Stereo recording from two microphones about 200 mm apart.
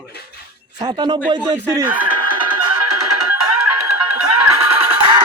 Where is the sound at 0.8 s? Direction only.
20° right (ahead or behind).